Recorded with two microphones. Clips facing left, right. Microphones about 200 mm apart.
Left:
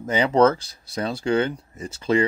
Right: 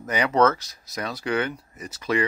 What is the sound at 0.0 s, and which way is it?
Speech, 25° left (ahead or behind).